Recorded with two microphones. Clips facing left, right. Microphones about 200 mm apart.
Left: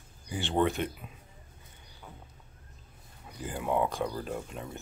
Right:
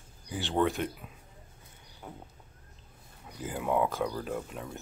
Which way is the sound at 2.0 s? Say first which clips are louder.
Right 5 dB; 40° right (ahead or behind).